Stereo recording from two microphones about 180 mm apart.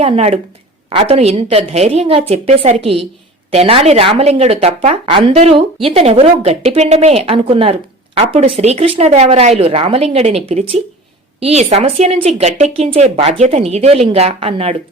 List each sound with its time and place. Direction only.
0.0 s speech: 35° right (ahead or behind)